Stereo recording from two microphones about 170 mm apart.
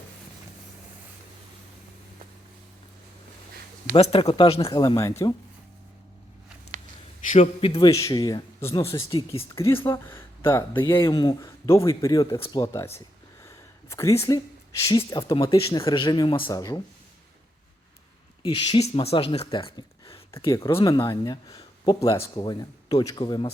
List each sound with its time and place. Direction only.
3.9 s speech: 35° left (ahead or behind)
4.8 s speech: 20° left (ahead or behind)
7.3 s speech: 40° left (ahead or behind)
7.9 s speech: 20° left (ahead or behind)
9.0 s speech: 35° left (ahead or behind)
9.6 s speech: 15° left (ahead or behind)
18.4 s speech: 25° left (ahead or behind)
20.4 s speech: 20° left (ahead or behind)